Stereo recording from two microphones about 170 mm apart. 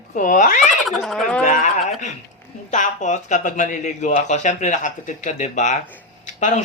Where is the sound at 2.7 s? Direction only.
45° left (ahead or behind).